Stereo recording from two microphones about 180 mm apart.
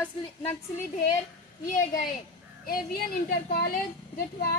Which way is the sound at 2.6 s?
55° left (ahead or behind).